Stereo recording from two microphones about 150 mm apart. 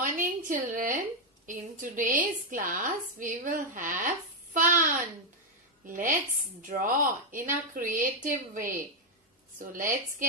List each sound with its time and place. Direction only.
0.4 s a woman's voice: 60° right (ahead or behind)